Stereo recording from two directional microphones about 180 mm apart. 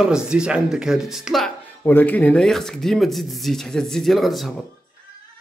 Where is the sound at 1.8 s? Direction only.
10° left (ahead or behind).